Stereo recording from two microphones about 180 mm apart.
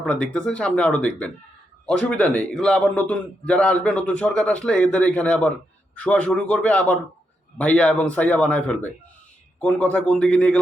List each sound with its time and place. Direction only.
0.0 s a man's voice: 5° left (ahead or behind)